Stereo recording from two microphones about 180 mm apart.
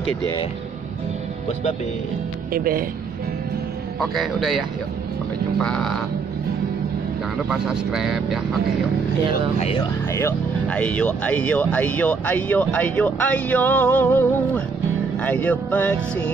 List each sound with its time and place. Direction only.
2.5 s speech: 55° right (ahead or behind)
4.0 s speech: centre (ahead or behind)
7.4 s speech: 5° right (ahead or behind)
9.6 s speech: 30° left (ahead or behind)
10.1 s speech: 10° left (ahead or behind)